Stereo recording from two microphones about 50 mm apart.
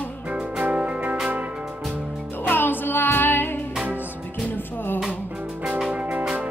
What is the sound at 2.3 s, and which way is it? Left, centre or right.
Music, left.